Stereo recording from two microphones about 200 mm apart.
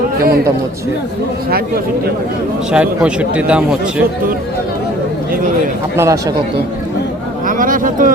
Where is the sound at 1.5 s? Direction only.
50° right (ahead or behind).